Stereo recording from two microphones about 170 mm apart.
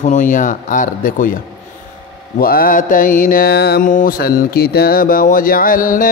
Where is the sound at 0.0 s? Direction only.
45° left (ahead or behind).